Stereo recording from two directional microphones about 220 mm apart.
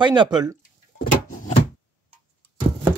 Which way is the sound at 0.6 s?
40° left (ahead or behind).